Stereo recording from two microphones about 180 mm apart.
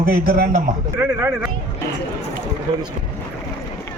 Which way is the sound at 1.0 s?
10° right (ahead or behind).